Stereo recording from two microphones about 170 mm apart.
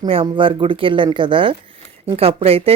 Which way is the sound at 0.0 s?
30° right (ahead or behind).